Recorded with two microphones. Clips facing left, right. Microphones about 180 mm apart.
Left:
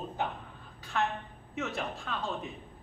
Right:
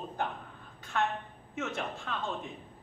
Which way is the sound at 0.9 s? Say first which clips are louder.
Even; centre (ahead or behind).